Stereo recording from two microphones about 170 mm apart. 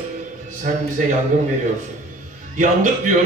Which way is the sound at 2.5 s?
50° right (ahead or behind).